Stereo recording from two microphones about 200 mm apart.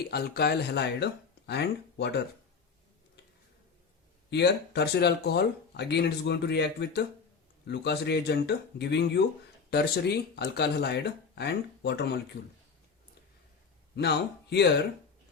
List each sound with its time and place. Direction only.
0.1 s speech: 55° left (ahead or behind)
4.3 s speech: 55° left (ahead or behind)
13.9 s speech: 55° left (ahead or behind)